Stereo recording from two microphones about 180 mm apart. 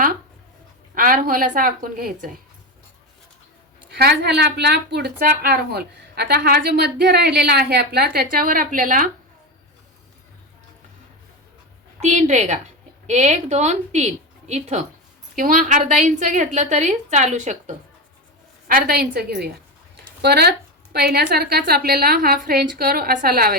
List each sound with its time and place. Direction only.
0.9 s a woman's voice: 50° right (ahead or behind)
3.9 s a woman's voice: 65° right (ahead or behind)
11.9 s a woman's voice: 40° right (ahead or behind)
18.7 s a woman's voice: 55° right (ahead or behind)